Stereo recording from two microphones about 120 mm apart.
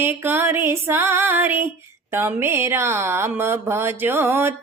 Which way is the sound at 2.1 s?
20° right (ahead or behind).